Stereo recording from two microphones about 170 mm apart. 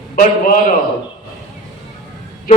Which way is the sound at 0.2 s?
50° left (ahead or behind).